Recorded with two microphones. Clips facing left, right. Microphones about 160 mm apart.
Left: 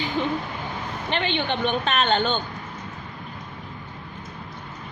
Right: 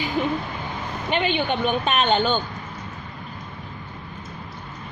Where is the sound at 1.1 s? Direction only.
10° right (ahead or behind).